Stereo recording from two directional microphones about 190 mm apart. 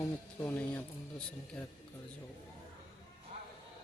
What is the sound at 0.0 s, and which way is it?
Speech, 15° left (ahead or behind).